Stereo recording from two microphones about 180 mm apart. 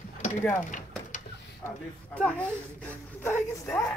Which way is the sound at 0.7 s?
45° left (ahead or behind).